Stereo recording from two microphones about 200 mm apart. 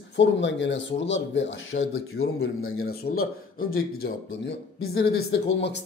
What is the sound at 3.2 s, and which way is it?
A man's voice, 50° left (ahead or behind).